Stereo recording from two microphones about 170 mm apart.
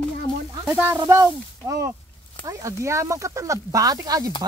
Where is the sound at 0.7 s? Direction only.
15° right (ahead or behind).